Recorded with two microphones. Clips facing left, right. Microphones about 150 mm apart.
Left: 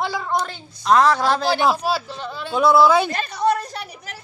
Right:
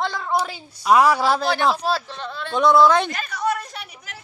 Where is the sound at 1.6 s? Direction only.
5° left (ahead or behind).